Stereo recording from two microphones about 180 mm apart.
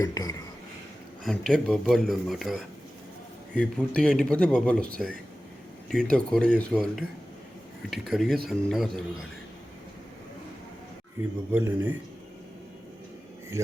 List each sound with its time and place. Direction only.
0.0 s speech: 20° left (ahead or behind)
1.2 s speech: 5° left (ahead or behind)
11.2 s speech: 10° right (ahead or behind)